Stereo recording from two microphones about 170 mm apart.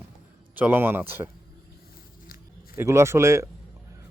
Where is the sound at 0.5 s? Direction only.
10° right (ahead or behind).